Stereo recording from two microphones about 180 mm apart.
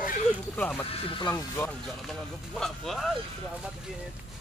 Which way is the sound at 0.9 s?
30° left (ahead or behind).